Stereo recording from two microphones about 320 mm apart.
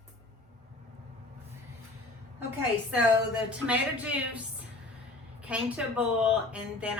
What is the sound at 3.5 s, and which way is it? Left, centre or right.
Speech, centre.